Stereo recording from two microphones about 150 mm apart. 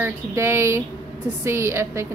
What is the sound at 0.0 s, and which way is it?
A woman's voice, 20° right (ahead or behind).